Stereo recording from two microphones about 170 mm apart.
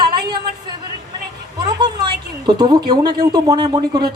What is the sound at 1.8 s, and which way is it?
Speech, 25° right (ahead or behind).